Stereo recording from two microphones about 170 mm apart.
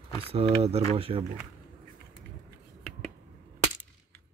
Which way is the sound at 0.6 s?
35° right (ahead or behind).